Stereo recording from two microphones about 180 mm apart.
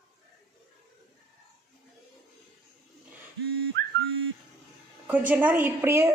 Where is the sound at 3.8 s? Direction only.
75° right (ahead or behind).